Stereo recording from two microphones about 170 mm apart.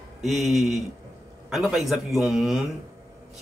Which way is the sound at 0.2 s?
Centre (ahead or behind).